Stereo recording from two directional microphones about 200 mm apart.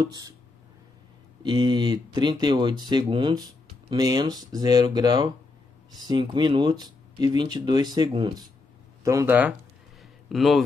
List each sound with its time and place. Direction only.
0.0 s speech: 20° right (ahead or behind)
1.4 s speech: 20° right (ahead or behind)
9.0 s speech: 15° right (ahead or behind)